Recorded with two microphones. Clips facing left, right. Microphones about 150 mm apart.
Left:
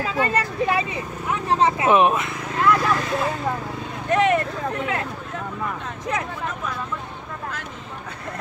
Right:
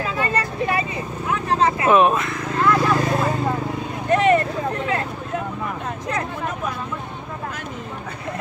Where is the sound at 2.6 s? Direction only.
Centre (ahead or behind).